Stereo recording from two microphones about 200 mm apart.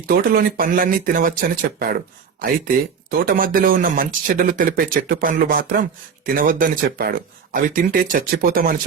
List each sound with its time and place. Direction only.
0.1 s speech: 45° right (ahead or behind)
3.1 s speech: 45° right (ahead or behind)